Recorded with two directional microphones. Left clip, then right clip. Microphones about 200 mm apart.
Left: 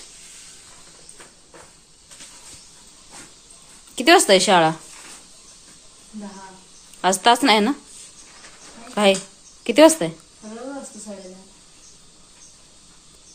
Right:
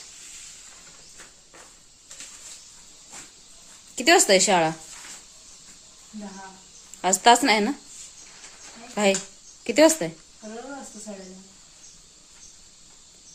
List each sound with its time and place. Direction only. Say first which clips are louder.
3.9 s speech: left 4 dB; 5° right (ahead or behind)
7.0 s speech: left 1 dB; 5° right (ahead or behind)
9.0 s speech: left 5 dB; 5° right (ahead or behind)